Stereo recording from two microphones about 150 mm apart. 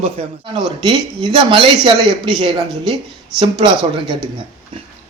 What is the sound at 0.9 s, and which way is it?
Speech, 35° right (ahead or behind).